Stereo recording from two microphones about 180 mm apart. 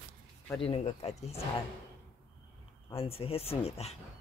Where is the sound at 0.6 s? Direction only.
35° left (ahead or behind).